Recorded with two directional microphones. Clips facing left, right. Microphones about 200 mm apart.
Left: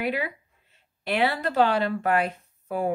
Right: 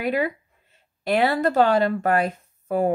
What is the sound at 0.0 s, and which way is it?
Speech, 45° right (ahead or behind).